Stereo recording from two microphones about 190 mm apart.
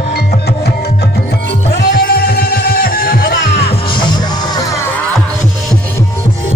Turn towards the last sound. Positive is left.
turn(degrees=15)  # may be behind; listen again after turning